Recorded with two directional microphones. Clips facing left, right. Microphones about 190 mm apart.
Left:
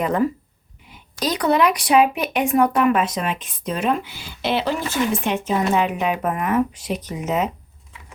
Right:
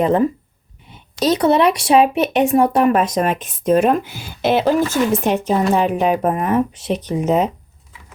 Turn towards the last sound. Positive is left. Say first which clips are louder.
# right 6 dB
turn(degrees=-30)  # may be behind; listen again after turning